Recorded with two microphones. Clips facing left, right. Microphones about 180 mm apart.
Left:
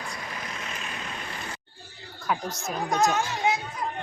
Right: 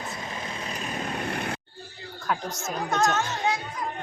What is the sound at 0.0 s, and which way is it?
Vehicle, 25° right (ahead or behind).